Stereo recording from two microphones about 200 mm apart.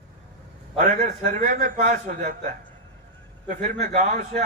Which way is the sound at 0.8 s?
40° right (ahead or behind).